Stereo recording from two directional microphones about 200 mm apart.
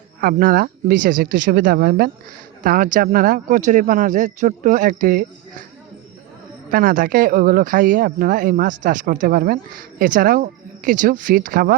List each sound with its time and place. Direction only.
0.2 s speech: 45° right (ahead or behind)
6.7 s speech: 45° right (ahead or behind)